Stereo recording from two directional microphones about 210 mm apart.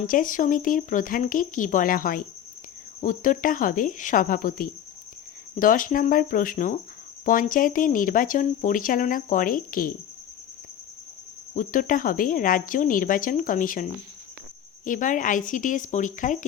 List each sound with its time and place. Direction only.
0.0 s speech: 40° left (ahead or behind)
11.5 s speech: 40° left (ahead or behind)
14.8 s speech: 40° left (ahead or behind)